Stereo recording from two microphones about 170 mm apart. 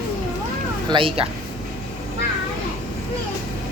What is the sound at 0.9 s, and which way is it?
Speech, 30° right (ahead or behind).